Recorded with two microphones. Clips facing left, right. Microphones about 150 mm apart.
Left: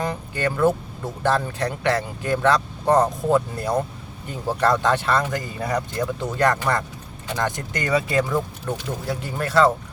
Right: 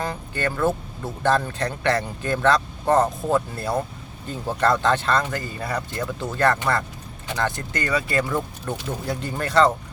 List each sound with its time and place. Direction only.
0.0 s speech: 15° left (ahead or behind)
8.3 s speech: 5° left (ahead or behind)